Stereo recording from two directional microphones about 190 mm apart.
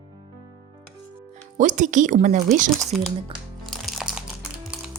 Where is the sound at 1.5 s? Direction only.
40° right (ahead or behind).